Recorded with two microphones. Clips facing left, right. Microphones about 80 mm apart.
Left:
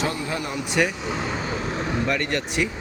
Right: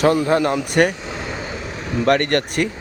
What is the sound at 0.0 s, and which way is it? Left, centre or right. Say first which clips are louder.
Speech: right 11 dB; right.